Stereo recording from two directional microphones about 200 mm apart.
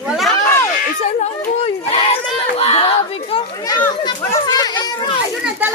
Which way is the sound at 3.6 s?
15° left (ahead or behind).